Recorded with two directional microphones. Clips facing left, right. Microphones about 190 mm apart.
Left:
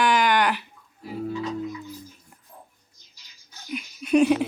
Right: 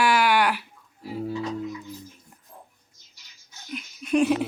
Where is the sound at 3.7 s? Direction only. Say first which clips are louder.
Left 3 dB; 5° left (ahead or behind).